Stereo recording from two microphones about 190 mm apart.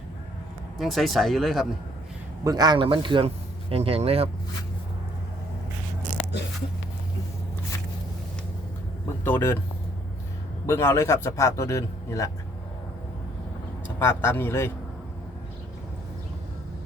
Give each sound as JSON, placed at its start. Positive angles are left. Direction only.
{"t": 0.8, "sound": "speech", "side_deg": 0}
{"t": 2.4, "sound": "speech", "side_deg": -20}
{"t": 9.2, "sound": "a man's voice", "side_deg": 10}
{"t": 10.7, "sound": "a man's voice", "side_deg": 15}
{"t": 14.0, "sound": "a man's voice", "side_deg": 15}